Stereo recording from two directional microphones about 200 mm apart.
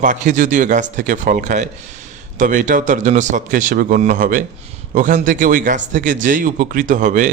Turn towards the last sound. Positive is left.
turn(degrees=-40)  # may be behind; listen again after turning